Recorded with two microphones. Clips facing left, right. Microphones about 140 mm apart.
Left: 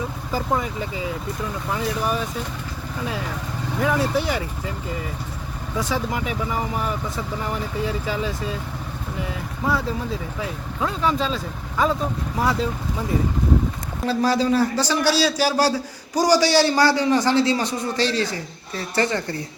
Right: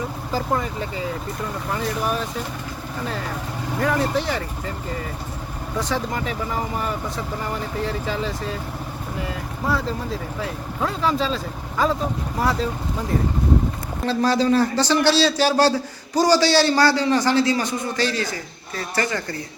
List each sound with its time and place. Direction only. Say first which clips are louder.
0.3 s speech: even; 5° left (ahead or behind)
3.8 s a man's voice: even; 5° left (ahead or behind)
5.7 s speech: even; 5° left (ahead or behind)
14.0 s a man's voice: right 1 dB; 5° left (ahead or behind); by 19.4 s 25° left (ahead or behind)